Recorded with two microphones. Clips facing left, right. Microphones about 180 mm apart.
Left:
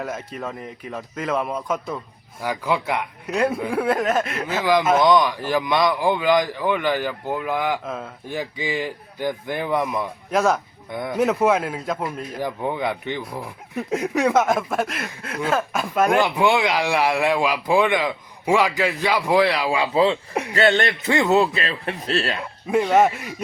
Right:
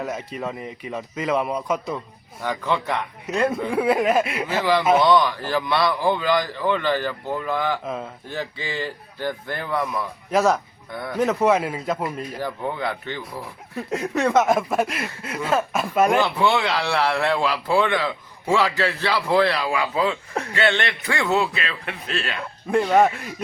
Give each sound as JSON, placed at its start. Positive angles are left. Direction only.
{"t": 0.0, "sound": "speech", "side_deg": 0}
{"t": 4.6, "sound": "speech", "side_deg": 15}
{"t": 7.9, "sound": "speech", "side_deg": 0}
{"t": 8.3, "sound": "speech", "side_deg": 15}
{"t": 10.3, "sound": "speech", "side_deg": 0}
{"t": 10.9, "sound": "a man's voice", "side_deg": 20}
{"t": 11.2, "sound": "speech", "side_deg": 0}
{"t": 12.4, "sound": "speech", "side_deg": 15}
{"t": 16.1, "sound": "speech", "side_deg": 15}
{"t": 19.7, "sound": "a man's voice", "side_deg": 25}
{"t": 20.5, "sound": "speech", "side_deg": 40}
{"t": 21.0, "sound": "a man's voice", "side_deg": 20}
{"t": 21.2, "sound": "speech", "side_deg": 40}
{"t": 22.7, "sound": "speech", "side_deg": 5}